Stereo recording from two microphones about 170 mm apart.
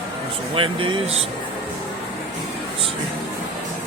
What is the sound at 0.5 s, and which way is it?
Speech, 30° right (ahead or behind).